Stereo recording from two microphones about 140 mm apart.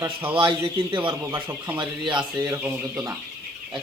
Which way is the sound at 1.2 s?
15° right (ahead or behind).